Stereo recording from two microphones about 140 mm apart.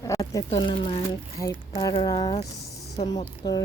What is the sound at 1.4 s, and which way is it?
Speech, 25° left (ahead or behind).